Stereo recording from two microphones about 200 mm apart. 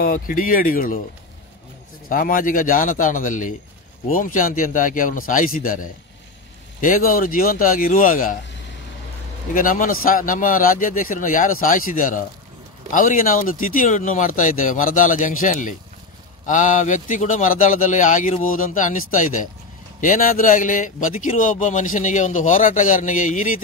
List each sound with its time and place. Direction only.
0.0 s speech: 45° left (ahead or behind)
2.0 s speech: 45° left (ahead or behind)
9.5 s speech: 45° left (ahead or behind)